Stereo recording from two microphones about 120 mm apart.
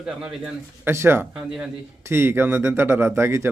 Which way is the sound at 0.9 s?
20° right (ahead or behind).